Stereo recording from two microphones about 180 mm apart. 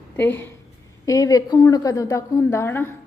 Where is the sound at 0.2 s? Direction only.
10° left (ahead or behind).